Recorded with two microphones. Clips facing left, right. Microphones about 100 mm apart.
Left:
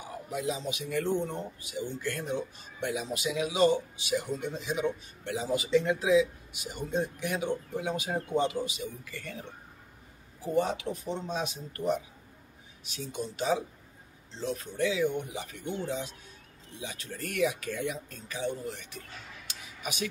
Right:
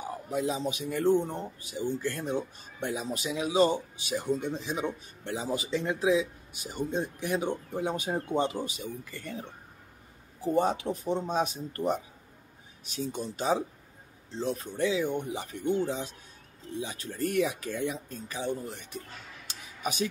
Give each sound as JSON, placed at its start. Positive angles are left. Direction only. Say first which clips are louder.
{"t": 0.3, "sound": "speech", "louder": "right 3 dB", "side_deg": -35}
{"t": 10.5, "sound": "speech", "louder": "right 2 dB", "side_deg": -40}